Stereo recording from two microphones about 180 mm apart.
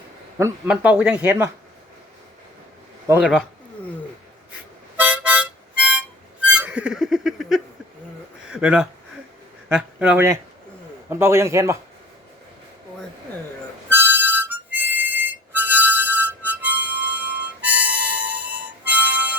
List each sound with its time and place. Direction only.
0.3 s speech: 15° right (ahead or behind)
3.1 s speech: 5° right (ahead or behind)
4.9 s harmonica: 10° right (ahead or behind)
6.4 s music: 5° right (ahead or behind)
8.4 s speech: 5° right (ahead or behind)
13.9 s harmonica: 10° right (ahead or behind)